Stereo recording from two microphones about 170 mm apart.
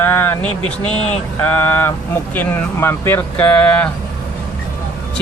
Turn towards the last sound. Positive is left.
turn(degrees=10)  # may be behind; listen again after turning